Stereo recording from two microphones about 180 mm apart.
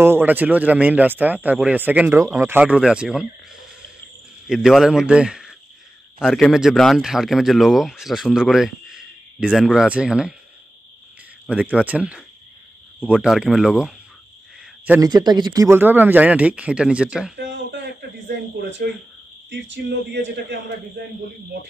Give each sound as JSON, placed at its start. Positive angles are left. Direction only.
{"t": 0.0, "sound": "speech", "side_deg": -10}
{"t": 4.5, "sound": "a man's voice", "side_deg": 0}
{"t": 11.4, "sound": "a man's voice", "side_deg": -5}
{"t": 14.9, "sound": "speech", "side_deg": -20}
{"t": 17.4, "sound": "a sound", "side_deg": -75}
{"t": 18.3, "sound": "speech", "side_deg": -80}